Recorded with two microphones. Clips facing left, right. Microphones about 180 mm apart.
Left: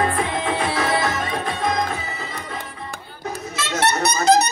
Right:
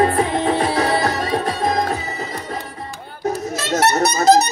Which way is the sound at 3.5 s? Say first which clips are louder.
Right 3 dB; 40° right (ahead or behind).